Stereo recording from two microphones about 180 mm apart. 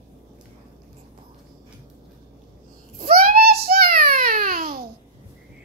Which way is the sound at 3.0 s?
50° right (ahead or behind).